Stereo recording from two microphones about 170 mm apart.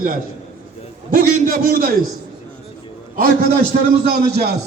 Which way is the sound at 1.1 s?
55° right (ahead or behind).